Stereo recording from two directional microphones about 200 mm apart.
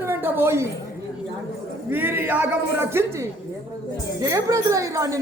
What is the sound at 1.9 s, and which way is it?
A woman's voice, 10° right (ahead or behind).